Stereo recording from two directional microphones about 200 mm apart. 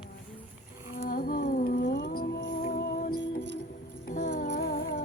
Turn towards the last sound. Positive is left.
turn(degrees=45)  # may be behind; listen again after turning